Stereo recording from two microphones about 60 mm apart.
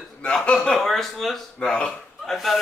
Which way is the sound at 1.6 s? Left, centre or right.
Centre.